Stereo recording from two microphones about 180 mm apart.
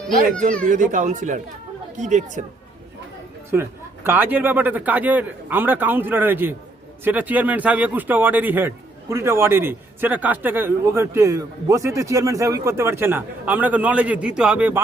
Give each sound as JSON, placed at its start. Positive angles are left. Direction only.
{"t": 0.7, "sound": "a child's voice", "side_deg": -45}
{"t": 3.5, "sound": "a man's voice", "side_deg": -15}